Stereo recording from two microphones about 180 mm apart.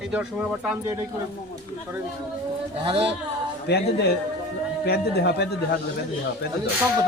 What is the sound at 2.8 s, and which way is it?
Speech, 30° right (ahead or behind).